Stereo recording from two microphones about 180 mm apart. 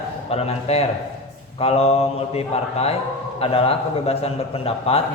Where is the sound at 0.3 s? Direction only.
35° left (ahead or behind).